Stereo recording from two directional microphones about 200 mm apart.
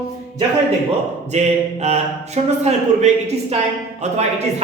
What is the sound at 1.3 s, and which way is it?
Speech, 35° right (ahead or behind).